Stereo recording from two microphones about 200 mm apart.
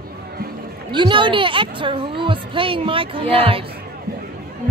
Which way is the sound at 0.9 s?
25° right (ahead or behind).